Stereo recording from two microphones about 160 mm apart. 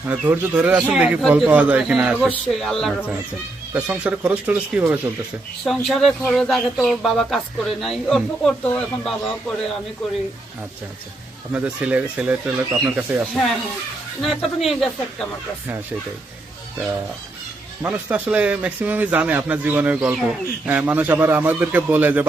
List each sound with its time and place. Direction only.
0.1 s a man's voice: 10° right (ahead or behind)
3.8 s a man's voice: 10° right (ahead or behind)
5.6 s speech: centre (ahead or behind)
11.5 s a man's voice: 10° right (ahead or behind)
17.8 s a man's voice: 10° right (ahead or behind)